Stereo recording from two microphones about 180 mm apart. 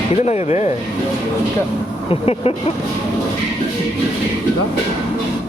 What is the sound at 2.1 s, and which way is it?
Speech, 35° left (ahead or behind).